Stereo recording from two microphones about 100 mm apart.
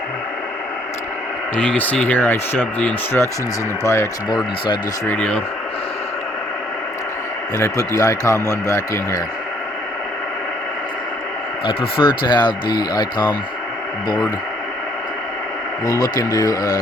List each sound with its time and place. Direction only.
1.5 s speech: 15° left (ahead or behind)
5.0 s speech: 15° left (ahead or behind)
7.5 s speech: 35° left (ahead or behind)
11.6 s speech: 60° left (ahead or behind); by 14.3 s 35° left (ahead or behind)
15.9 s speech: 35° left (ahead or behind)